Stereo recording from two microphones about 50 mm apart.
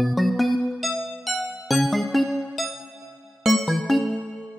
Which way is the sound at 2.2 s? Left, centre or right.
Centre.